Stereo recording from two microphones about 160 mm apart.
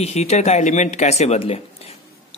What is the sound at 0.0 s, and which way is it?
Speech, 45° left (ahead or behind).